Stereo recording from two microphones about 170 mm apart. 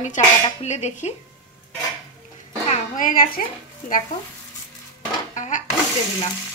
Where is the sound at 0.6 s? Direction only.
40° left (ahead or behind).